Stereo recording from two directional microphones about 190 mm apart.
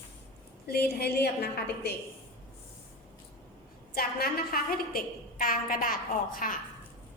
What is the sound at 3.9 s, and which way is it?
A woman's voice, 55° left (ahead or behind).